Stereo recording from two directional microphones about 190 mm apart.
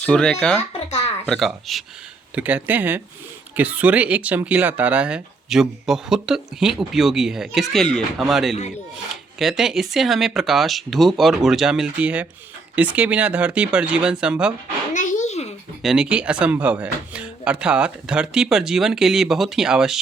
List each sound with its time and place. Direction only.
0.0 s speech: 5° left (ahead or behind)
14.9 s a sound: 40° left (ahead or behind)
15.8 s speech: 5° right (ahead or behind)